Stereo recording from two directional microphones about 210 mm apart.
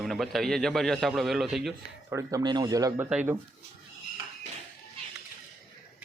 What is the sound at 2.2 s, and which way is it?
A man's voice, 15° right (ahead or behind).